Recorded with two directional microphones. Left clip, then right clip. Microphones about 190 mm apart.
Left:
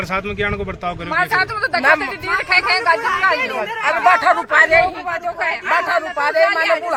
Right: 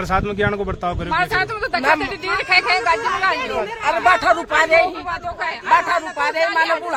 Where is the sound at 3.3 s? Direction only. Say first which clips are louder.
Left 2 dB; 15° left (ahead or behind).